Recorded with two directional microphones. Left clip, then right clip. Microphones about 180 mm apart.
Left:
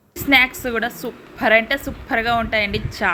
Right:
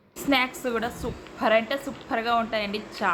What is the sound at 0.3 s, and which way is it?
A woman's voice, 15° left (ahead or behind).